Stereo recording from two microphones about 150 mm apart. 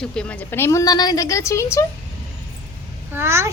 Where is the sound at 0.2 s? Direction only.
10° left (ahead or behind).